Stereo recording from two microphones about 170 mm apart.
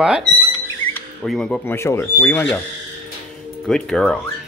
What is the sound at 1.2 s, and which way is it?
Speech, 5° left (ahead or behind).